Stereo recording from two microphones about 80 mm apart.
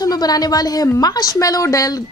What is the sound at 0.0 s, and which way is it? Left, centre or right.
Speech, left.